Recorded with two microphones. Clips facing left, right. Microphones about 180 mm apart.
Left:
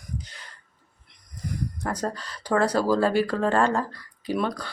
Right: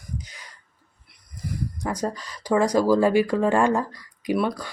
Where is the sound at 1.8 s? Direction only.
10° right (ahead or behind).